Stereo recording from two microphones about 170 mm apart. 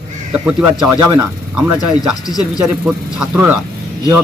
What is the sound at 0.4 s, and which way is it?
Speech, 10° right (ahead or behind).